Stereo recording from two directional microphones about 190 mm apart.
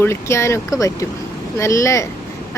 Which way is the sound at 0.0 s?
15° left (ahead or behind).